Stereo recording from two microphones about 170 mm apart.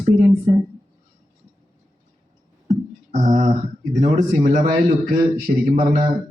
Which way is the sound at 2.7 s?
45° right (ahead or behind).